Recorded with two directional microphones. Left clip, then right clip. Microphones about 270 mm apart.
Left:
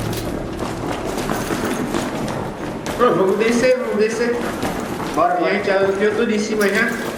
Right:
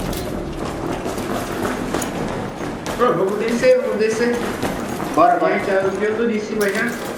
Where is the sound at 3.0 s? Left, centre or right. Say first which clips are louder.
Left 2 dB; centre.